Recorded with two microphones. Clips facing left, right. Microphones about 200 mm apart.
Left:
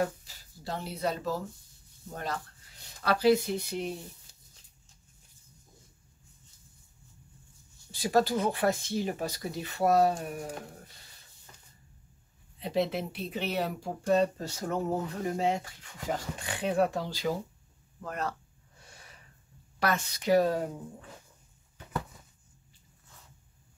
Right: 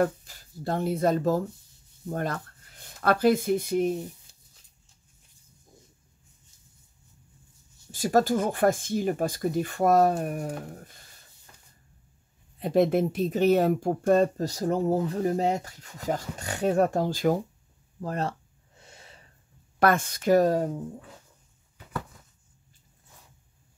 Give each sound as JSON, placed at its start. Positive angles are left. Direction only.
{"t": 0.0, "sound": "speech", "side_deg": -55}
{"t": 7.9, "sound": "speech", "side_deg": -45}
{"t": 12.5, "sound": "speech", "side_deg": -50}
{"t": 18.0, "sound": "speech", "side_deg": -30}
{"t": 18.8, "sound": "a sound", "side_deg": -25}
{"t": 19.8, "sound": "speech", "side_deg": -50}